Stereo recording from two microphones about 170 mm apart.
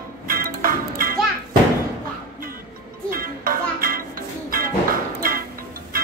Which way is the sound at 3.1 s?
55° right (ahead or behind).